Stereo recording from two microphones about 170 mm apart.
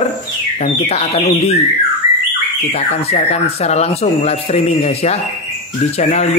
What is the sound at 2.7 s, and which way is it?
Speech, 40° left (ahead or behind).